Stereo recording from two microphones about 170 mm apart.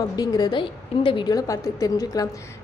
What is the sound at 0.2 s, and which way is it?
A woman's voice, 25° left (ahead or behind).